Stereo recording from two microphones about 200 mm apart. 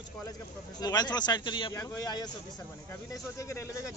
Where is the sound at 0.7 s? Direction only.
20° left (ahead or behind).